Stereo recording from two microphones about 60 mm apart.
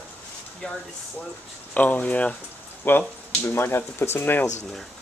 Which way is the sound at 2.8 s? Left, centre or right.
Left.